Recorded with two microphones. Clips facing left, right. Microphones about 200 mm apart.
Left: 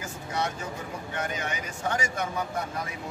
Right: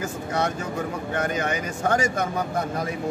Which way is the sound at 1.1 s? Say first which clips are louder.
Right 7 dB; 50° right (ahead or behind).